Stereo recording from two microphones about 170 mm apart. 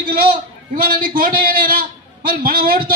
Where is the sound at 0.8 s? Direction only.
55° right (ahead or behind).